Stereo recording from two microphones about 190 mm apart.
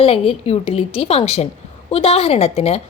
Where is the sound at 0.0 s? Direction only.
30° left (ahead or behind).